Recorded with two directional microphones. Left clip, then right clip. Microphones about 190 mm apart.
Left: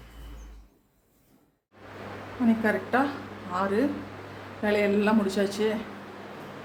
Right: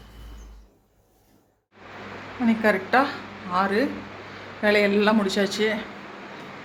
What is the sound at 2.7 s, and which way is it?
Speech, 20° right (ahead or behind).